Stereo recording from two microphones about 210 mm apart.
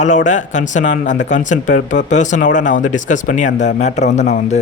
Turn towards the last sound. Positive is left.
turn(degrees=35)  # may be behind; listen again after turning